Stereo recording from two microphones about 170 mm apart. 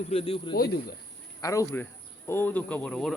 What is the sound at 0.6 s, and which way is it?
Speech, 65° left (ahead or behind).